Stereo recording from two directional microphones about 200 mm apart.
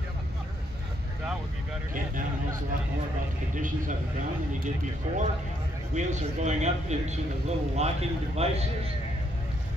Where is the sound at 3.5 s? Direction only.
40° right (ahead or behind).